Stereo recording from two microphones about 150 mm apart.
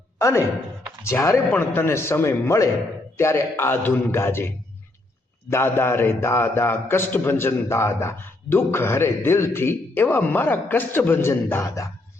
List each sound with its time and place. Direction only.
0.2 s a man's voice: 20° left (ahead or behind)